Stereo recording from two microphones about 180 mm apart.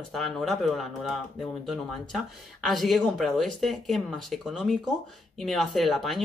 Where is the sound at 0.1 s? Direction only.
Centre (ahead or behind).